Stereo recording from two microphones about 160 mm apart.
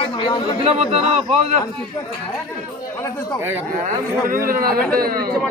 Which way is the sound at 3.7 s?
60° right (ahead or behind).